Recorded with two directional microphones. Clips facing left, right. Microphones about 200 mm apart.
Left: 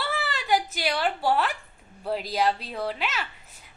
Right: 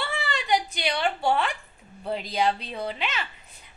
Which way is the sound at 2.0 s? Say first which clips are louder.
Even; 5° left (ahead or behind).